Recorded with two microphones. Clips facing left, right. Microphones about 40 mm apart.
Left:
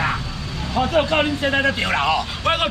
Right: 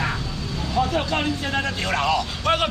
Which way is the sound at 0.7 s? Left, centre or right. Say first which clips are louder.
Left 5 dB; left.